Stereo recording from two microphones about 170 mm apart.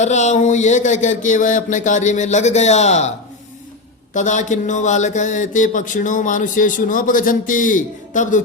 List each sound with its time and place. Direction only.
0.0 s speech: 45° left (ahead or behind)
4.1 s speech: 45° left (ahead or behind)